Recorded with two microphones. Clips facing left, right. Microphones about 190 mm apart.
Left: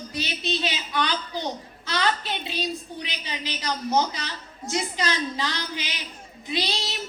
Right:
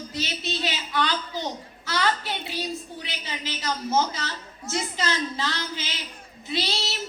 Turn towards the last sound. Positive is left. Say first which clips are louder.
# even
turn(degrees=15)  # may be behind; listen again after turning